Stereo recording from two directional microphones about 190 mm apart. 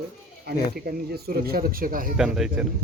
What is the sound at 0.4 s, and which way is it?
Speech, 55° right (ahead or behind).